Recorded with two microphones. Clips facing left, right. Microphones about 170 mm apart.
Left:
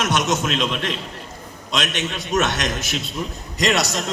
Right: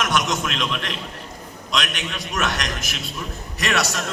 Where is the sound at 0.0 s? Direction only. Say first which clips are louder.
Left 2 dB; 25° left (ahead or behind).